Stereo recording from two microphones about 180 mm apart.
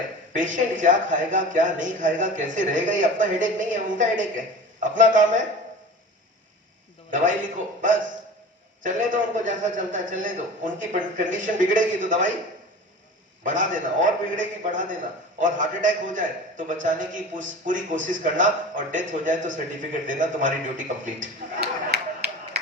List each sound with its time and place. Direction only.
0.3 s a man's voice: 45° right (ahead or behind)
7.8 s a man's voice: 45° right (ahead or behind)
13.4 s a man's voice: 45° right (ahead or behind)
22.2 s a sound: 60° right (ahead or behind)